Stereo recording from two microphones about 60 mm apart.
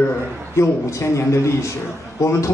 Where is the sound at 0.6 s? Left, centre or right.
Left.